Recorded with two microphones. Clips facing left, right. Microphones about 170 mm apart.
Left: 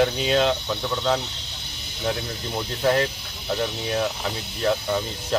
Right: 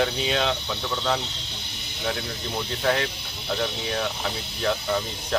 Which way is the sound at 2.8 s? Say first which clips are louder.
Left 4 dB; 5° left (ahead or behind).